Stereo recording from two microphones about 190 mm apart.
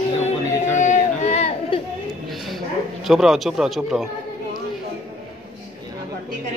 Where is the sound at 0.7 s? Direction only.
40° left (ahead or behind).